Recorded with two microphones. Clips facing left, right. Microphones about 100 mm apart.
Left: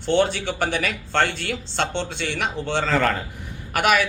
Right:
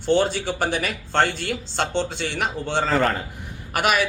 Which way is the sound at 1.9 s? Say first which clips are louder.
Right 2 dB; 45° right (ahead or behind).